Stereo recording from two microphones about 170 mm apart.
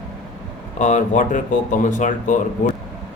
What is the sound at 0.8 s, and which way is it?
Speech, 45° left (ahead or behind).